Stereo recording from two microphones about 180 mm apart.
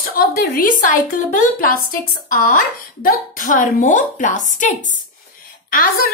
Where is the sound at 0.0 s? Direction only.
55° left (ahead or behind).